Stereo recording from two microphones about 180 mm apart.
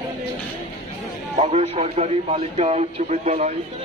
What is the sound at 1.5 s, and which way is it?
Speech, 35° right (ahead or behind).